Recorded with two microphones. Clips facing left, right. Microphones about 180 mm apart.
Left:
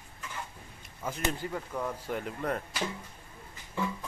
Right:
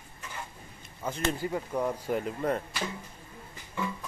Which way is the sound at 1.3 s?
15° right (ahead or behind).